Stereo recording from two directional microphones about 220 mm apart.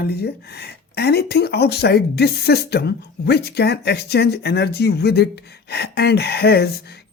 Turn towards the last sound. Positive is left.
turn(degrees=45)  # may be behind; listen again after turning